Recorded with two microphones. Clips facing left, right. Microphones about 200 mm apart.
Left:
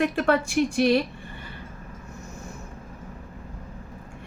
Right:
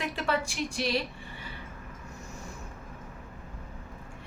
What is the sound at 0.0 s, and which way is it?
Speech, 55° left (ahead or behind).